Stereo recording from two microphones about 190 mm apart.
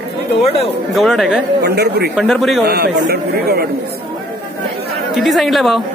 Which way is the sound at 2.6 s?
60° right (ahead or behind).